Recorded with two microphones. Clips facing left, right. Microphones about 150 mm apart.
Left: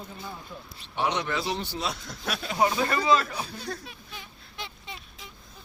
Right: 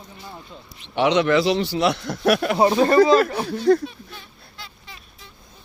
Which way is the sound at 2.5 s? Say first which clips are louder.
Right 5 dB; 35° right (ahead or behind).